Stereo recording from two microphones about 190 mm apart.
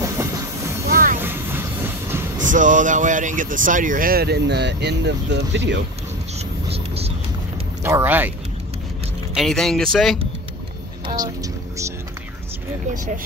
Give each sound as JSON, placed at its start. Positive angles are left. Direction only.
{"t": 0.0, "sound": "train", "side_deg": -15}
{"t": 0.8, "sound": "vehicle", "side_deg": -50}
{"t": 1.2, "sound": "train", "side_deg": -10}
{"t": 2.4, "sound": "speech", "side_deg": -40}
{"t": 7.8, "sound": "speech", "side_deg": -10}
{"t": 9.3, "sound": "speech", "side_deg": 0}
{"t": 11.1, "sound": "music", "side_deg": -20}
{"t": 12.9, "sound": "speech", "side_deg": -40}